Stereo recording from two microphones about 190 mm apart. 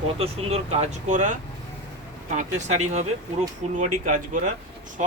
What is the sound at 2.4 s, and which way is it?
Speech, 40° right (ahead or behind).